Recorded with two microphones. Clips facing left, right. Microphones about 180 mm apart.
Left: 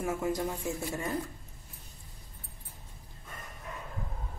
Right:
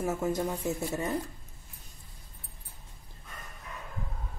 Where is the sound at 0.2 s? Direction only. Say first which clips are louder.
Right 2 dB; 25° right (ahead or behind).